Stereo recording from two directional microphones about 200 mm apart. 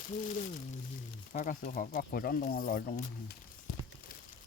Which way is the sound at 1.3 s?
40° left (ahead or behind).